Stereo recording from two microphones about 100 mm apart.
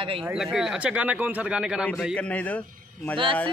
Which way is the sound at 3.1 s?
60° right (ahead or behind).